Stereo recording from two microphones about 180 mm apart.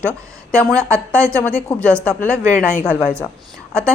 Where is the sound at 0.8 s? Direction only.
15° right (ahead or behind).